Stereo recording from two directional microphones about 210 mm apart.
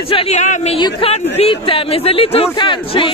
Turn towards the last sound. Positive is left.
turn(degrees=25)  # may be behind; listen again after turning